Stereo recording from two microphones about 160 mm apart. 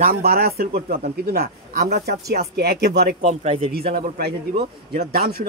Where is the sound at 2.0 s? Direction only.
90° right.